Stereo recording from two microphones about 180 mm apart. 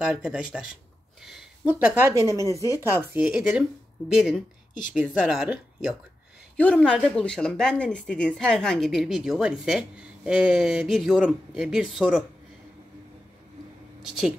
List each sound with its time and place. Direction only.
0.0 s a woman's voice: 5° right (ahead or behind)
2.4 s speech: 20° left (ahead or behind)
2.9 s speech: 10° right (ahead or behind)
5.2 s a woman's voice: 5° right (ahead or behind)